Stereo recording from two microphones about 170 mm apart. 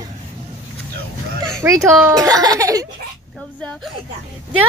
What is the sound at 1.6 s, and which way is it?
A child's voice, 15° right (ahead or behind).